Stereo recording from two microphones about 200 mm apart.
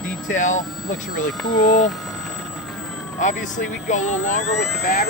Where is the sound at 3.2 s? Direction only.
40° left (ahead or behind).